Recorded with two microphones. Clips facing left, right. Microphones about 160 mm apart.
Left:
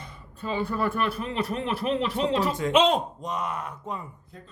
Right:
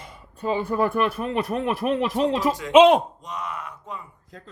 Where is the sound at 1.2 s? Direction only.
55° right (ahead or behind).